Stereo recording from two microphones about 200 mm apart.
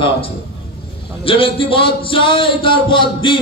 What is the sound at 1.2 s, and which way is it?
Speech, 25° left (ahead or behind).